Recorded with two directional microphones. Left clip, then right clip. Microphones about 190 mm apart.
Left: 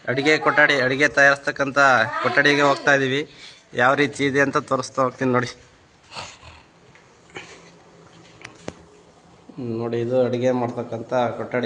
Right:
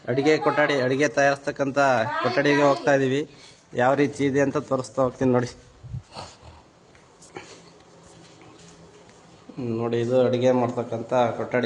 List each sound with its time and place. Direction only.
0.0 s a man's voice: 20° right (ahead or behind)
4.4 s a man's voice: 5° right (ahead or behind)
5.0 s a man's voice: 20° right (ahead or behind)
6.1 s dog: 20° right (ahead or behind)
9.6 s a man's voice: 5° right (ahead or behind)